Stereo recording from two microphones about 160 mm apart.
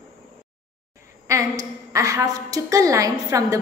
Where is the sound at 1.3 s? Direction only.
20° right (ahead or behind).